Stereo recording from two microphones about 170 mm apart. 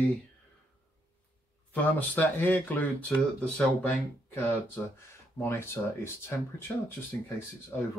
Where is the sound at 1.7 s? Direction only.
10° left (ahead or behind).